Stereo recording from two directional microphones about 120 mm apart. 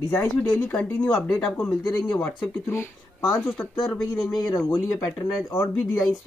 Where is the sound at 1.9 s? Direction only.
30° left (ahead or behind).